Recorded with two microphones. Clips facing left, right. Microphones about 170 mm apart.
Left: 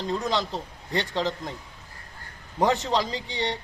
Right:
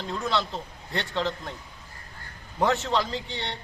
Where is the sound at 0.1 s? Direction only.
15° left (ahead or behind).